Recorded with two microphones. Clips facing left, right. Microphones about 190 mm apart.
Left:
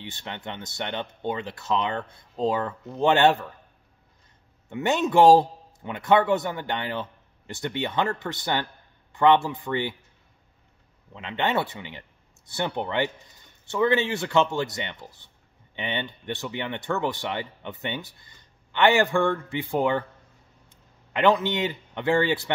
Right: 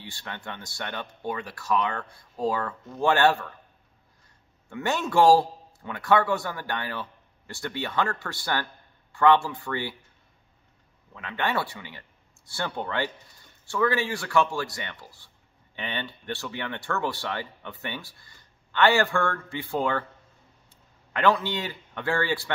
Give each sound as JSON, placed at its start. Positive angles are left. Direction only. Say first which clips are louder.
{"t": 0.0, "sound": "speech", "louder": "left 3 dB", "side_deg": 20}
{"t": 4.6, "sound": "speech", "louder": "left 4 dB", "side_deg": 20}
{"t": 11.1, "sound": "a man's voice", "louder": "left 3 dB", "side_deg": 20}